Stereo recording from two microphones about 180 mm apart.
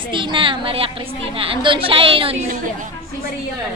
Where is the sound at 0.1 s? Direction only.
25° right (ahead or behind).